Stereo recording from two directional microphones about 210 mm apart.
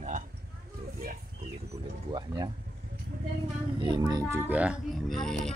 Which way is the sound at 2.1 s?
20° right (ahead or behind).